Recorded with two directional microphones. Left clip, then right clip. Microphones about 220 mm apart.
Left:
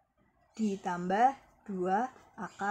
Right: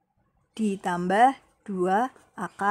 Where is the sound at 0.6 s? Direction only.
50° right (ahead or behind).